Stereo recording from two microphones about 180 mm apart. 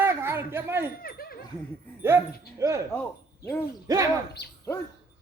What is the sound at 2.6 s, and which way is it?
Speech, 15° right (ahead or behind).